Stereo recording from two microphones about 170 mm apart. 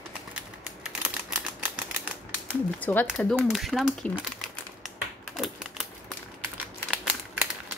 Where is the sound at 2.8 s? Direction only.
10° left (ahead or behind).